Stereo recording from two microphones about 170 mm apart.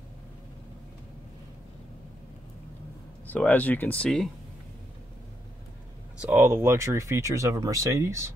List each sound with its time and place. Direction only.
3.3 s speech: 10° left (ahead or behind)
6.2 s speech: 15° right (ahead or behind)